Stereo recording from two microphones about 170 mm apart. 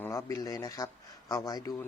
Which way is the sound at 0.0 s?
15° left (ahead or behind).